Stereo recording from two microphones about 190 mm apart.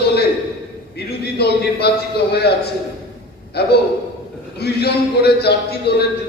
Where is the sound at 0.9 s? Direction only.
60° left (ahead or behind).